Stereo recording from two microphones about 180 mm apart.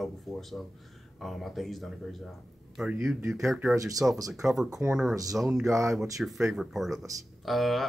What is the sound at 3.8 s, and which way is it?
Speech, 20° right (ahead or behind).